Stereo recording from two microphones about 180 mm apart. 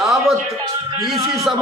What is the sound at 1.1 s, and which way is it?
Speech, 15° right (ahead or behind).